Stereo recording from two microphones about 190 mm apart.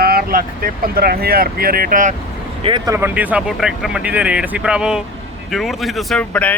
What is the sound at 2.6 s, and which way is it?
Speech, 20° right (ahead or behind).